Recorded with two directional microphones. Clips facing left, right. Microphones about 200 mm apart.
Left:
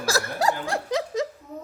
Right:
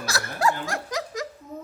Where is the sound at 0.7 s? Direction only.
30° left (ahead or behind).